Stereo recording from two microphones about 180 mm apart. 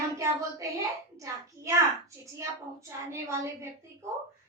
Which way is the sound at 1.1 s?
15° right (ahead or behind).